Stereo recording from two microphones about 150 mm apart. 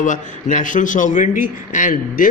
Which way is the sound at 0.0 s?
60° left (ahead or behind).